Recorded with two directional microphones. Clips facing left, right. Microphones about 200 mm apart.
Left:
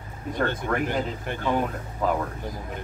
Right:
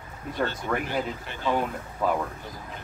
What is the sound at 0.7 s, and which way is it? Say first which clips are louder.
Speech: left 2 dB; 5° right (ahead or behind).